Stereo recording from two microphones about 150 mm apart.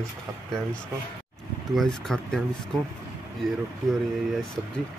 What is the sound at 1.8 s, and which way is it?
Speech, 5° left (ahead or behind).